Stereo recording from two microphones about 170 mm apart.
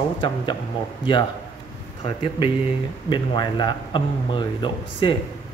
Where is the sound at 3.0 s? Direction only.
25° left (ahead or behind).